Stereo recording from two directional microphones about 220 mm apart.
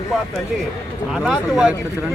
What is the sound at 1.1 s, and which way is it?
Speech, centre (ahead or behind).